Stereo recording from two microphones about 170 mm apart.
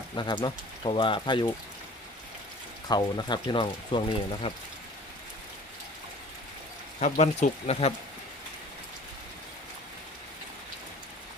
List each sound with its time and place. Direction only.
0.2 s speech: 25° left (ahead or behind)
2.9 s speech: 25° left (ahead or behind)
7.0 s speech: 45° left (ahead or behind)